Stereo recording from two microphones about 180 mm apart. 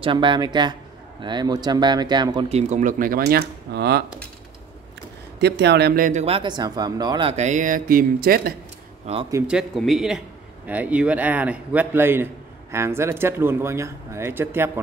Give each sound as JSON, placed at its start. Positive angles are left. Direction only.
{"t": 0.0, "sound": "speech", "side_deg": -25}
{"t": 2.5, "sound": "speech", "side_deg": -45}
{"t": 5.4, "sound": "speech", "side_deg": -70}
{"t": 6.0, "sound": "speech", "side_deg": -35}
{"t": 9.0, "sound": "speech", "side_deg": -30}
{"t": 9.5, "sound": "speech", "side_deg": 0}